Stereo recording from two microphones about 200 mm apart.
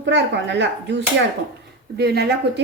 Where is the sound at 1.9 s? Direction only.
55° right (ahead or behind).